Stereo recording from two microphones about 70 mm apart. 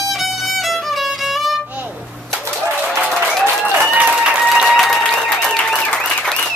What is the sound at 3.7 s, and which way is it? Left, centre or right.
Applause, right.